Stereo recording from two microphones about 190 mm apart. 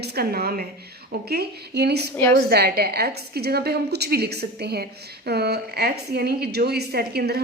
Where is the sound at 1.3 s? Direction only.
60° right (ahead or behind).